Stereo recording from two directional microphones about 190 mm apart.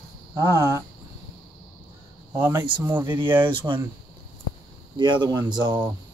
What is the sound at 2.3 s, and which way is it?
Speech, 10° right (ahead or behind).